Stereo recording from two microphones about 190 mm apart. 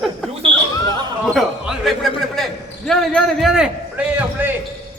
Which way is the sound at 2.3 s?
Centre (ahead or behind).